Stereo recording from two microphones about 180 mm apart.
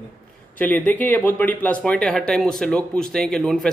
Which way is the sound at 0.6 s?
10° left (ahead or behind).